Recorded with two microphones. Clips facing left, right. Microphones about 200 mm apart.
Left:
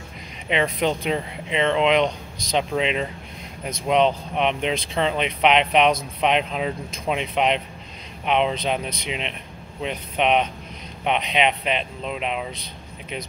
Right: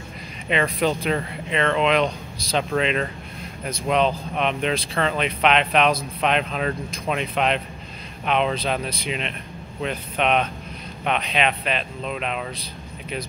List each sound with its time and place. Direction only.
0.5 s speech: 20° left (ahead or behind)